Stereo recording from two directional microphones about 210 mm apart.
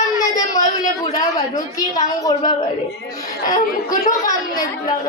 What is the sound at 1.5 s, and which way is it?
A woman's voice, 15° left (ahead or behind).